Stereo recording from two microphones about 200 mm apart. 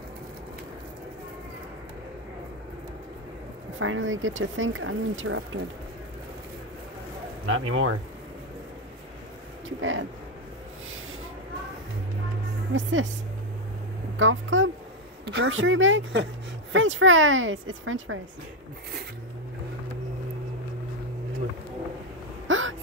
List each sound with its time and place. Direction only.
3.8 s speech: 80° right
7.4 s speech: 90° right
9.8 s speech: 80° right
12.7 s speech: 70° right (ahead or behind)
14.1 s speech: 75° right (ahead or behind)
15.2 s speech: 60° right (ahead or behind); by 18.2 s 85° right
22.5 s hiccup: 80° right